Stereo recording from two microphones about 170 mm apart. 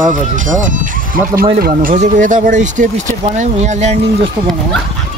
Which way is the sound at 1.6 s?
60° right (ahead or behind).